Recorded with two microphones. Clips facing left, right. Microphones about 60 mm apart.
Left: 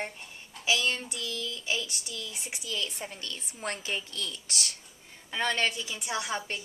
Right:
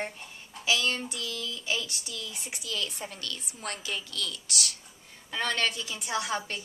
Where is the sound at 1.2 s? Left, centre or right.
Centre.